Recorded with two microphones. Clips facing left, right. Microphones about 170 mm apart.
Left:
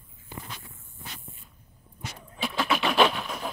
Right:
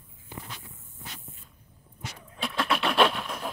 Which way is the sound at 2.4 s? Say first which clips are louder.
Left 1 dB; 5° left (ahead or behind).